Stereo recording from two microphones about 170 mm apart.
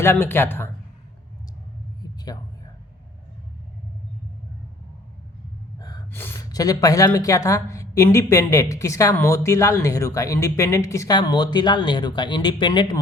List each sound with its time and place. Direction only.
0.0 s speech: 15° left (ahead or behind)
2.1 s a sound: 20° left (ahead or behind)
6.1 s a woman's voice: 15° left (ahead or behind)